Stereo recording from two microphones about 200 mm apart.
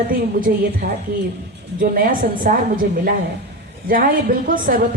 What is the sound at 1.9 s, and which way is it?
Speech, 45° right (ahead or behind).